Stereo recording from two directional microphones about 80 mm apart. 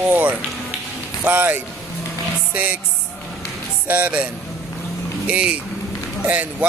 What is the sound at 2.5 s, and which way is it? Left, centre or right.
Music, centre.